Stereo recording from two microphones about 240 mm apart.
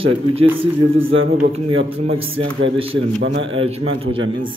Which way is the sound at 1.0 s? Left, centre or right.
Right.